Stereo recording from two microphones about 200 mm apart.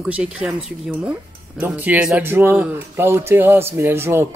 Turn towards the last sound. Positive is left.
turn(degrees=-10)  # may be behind; listen again after turning